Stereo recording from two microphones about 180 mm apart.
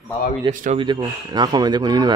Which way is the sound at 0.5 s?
45° right (ahead or behind).